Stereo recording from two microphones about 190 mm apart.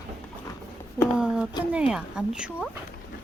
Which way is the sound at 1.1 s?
5° right (ahead or behind).